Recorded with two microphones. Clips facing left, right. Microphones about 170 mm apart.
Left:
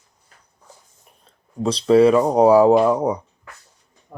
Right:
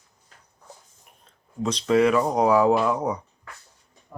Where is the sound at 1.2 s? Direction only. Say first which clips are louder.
Left 5 dB; 35° left (ahead or behind).